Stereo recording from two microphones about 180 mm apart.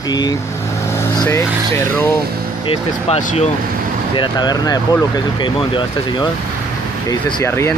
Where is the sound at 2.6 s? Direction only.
30° left (ahead or behind).